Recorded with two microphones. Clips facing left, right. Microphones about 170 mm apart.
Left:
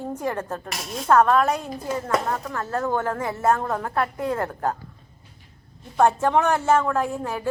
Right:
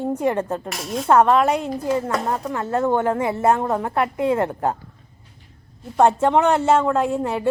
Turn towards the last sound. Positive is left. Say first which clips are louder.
# right 5 dB
turn(degrees=-25)  # may be behind; listen again after turning